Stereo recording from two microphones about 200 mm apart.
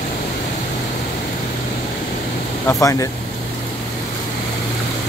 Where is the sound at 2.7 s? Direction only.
15° left (ahead or behind).